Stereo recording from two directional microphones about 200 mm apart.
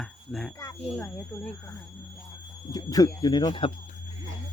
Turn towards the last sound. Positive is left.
turn(degrees=25)  # may be behind; listen again after turning